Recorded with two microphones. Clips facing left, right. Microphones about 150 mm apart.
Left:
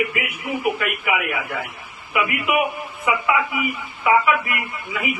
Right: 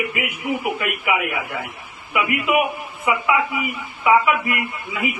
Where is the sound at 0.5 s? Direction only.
20° right (ahead or behind).